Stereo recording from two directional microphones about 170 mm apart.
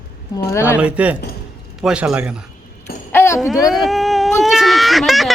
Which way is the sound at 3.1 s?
15° left (ahead or behind).